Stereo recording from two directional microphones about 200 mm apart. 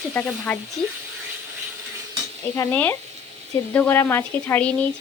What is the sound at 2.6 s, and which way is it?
Speech, 10° left (ahead or behind).